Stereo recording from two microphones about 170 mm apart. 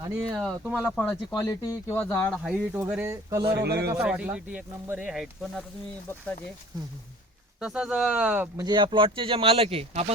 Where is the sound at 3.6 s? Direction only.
75° right (ahead or behind).